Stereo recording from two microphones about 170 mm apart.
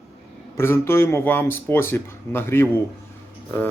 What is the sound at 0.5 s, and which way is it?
Speech, 15° left (ahead or behind).